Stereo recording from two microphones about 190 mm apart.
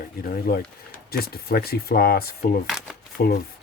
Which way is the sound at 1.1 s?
55° left (ahead or behind).